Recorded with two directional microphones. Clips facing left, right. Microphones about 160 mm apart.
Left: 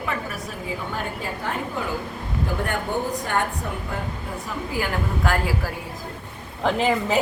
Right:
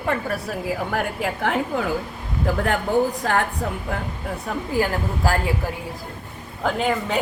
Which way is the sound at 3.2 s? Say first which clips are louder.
Right 3 dB; 90° right.